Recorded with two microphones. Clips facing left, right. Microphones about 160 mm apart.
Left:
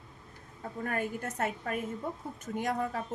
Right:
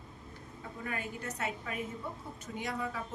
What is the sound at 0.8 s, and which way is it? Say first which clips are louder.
A woman's voice: left 6 dB; 50° left (ahead or behind).